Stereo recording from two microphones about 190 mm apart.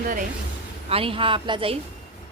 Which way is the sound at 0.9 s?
30° right (ahead or behind).